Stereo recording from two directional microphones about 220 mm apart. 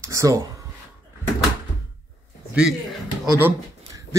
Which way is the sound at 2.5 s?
5° right (ahead or behind).